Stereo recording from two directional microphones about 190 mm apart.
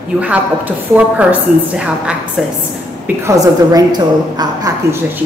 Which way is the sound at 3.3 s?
20° right (ahead or behind).